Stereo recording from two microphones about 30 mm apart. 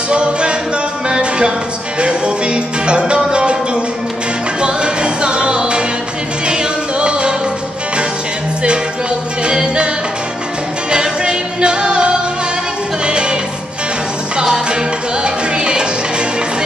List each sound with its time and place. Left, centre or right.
0.1 s music: right
9.4 s music: right
10.9 s music: right
15.2 s music: right